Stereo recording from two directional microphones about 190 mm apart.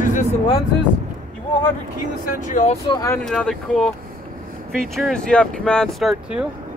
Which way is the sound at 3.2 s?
5° left (ahead or behind).